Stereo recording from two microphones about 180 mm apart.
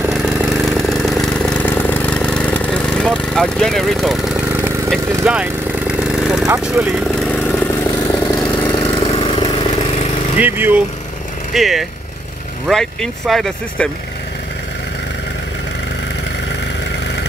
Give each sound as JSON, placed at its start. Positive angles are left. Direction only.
{"t": 0.1, "sound": "engine", "side_deg": 0}
{"t": 5.2, "sound": "vehicle", "side_deg": -5}
{"t": 6.8, "sound": "speech", "side_deg": -10}
{"t": 8.3, "sound": "vehicle", "side_deg": 20}
{"t": 10.3, "sound": "speech", "side_deg": -10}